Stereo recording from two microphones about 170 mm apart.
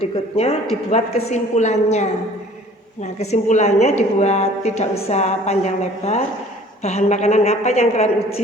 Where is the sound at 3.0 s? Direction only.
40° left (ahead or behind).